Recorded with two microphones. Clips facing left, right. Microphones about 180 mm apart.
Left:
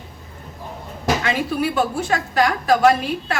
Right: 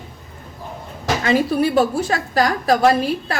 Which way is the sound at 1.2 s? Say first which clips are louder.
Right 4 dB; 35° right (ahead or behind).